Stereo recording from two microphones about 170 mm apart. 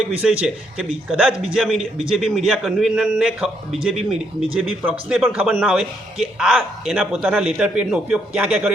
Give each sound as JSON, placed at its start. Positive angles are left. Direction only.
{"t": 0.2, "sound": "a man's voice", "side_deg": -5}